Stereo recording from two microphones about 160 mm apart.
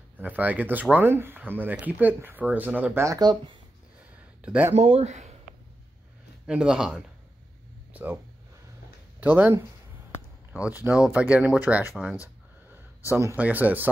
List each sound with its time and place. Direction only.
0.2 s speech: 10° right (ahead or behind); by 3.5 s 25° right (ahead or behind)
4.4 s speech: 10° right (ahead or behind)
4.7 s speech: 40° right (ahead or behind)
6.4 s speech: 5° right (ahead or behind)
7.9 s a sound: 10° right (ahead or behind)
9.2 s speech: 10° right (ahead or behind)
10.8 s speech: 10° right (ahead or behind)
13.2 s speech: 15° right (ahead or behind)